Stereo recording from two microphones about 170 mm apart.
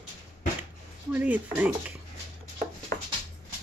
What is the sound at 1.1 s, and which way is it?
Speech, 10° right (ahead or behind).